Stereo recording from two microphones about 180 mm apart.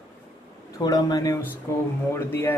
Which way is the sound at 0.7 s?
20° left (ahead or behind).